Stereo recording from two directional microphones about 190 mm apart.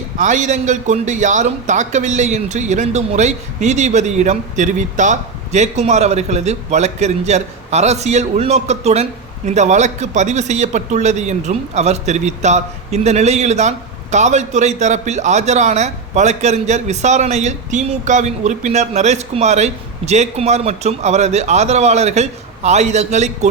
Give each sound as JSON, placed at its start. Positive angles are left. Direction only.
{"t": 0.2, "sound": "a man's voice", "side_deg": -40}